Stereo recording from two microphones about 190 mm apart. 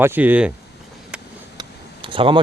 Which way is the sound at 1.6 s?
25° right (ahead or behind).